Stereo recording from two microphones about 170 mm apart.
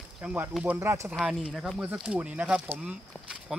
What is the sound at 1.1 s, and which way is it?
Speech, 5° right (ahead or behind).